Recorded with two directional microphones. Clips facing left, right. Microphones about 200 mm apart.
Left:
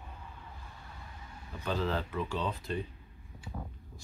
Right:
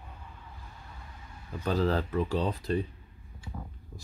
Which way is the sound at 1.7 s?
40° right (ahead or behind).